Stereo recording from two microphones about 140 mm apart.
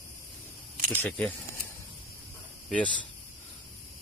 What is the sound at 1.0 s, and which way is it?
Speech, 10° left (ahead or behind).